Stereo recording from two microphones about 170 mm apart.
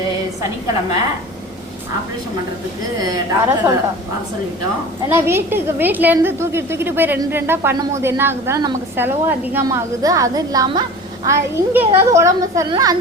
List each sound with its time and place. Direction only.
3.0 s a woman's voice: 20° right (ahead or behind)
5.0 s a woman's voice: 15° right (ahead or behind)